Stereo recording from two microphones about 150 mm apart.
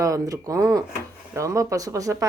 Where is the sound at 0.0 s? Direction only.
20° right (ahead or behind).